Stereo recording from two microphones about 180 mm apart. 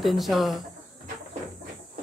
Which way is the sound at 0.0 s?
Centre (ahead or behind).